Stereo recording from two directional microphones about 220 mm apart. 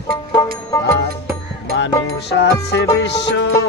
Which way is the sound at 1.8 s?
55° left (ahead or behind).